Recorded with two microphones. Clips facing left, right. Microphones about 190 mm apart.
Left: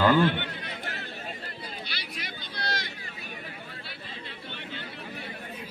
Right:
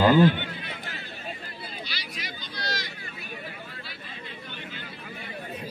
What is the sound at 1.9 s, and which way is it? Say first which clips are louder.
Vehicle: right 1 dB; 55° left (ahead or behind).